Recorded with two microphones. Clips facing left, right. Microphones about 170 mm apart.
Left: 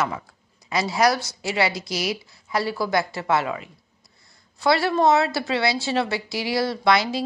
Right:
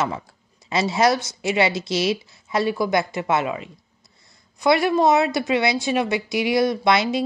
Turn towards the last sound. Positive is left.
turn(degrees=-20)  # may be behind; listen again after turning